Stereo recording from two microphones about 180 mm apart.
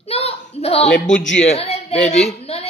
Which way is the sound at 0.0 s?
35° left (ahead or behind).